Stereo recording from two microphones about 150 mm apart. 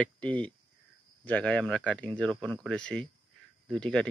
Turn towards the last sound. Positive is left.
turn(degrees=5)  # may be behind; listen again after turning